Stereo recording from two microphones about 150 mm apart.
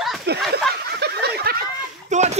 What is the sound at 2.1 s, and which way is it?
Speech, 50° right (ahead or behind).